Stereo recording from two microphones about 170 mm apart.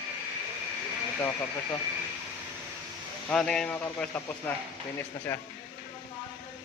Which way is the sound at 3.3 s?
5° left (ahead or behind).